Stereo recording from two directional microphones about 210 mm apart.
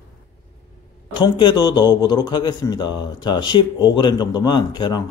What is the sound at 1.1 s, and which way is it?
A man's voice, 20° left (ahead or behind).